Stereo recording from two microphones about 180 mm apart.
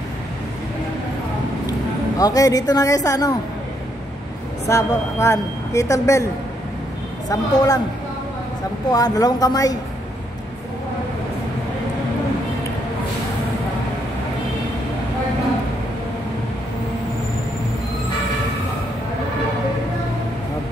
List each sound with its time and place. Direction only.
1.7 s a woman's voice: 20° left (ahead or behind)
4.6 s a woman's voice: 15° left (ahead or behind)
7.2 s speech: 20° left (ahead or behind)
8.9 s speech: 20° left (ahead or behind)